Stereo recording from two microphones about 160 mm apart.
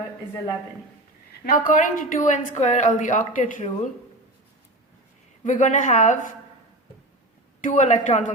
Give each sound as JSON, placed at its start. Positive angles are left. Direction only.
{"t": 1.5, "sound": "a woman's voice", "side_deg": 55}
{"t": 5.4, "sound": "a woman's voice", "side_deg": 50}
{"t": 7.6, "sound": "a woman's voice", "side_deg": 50}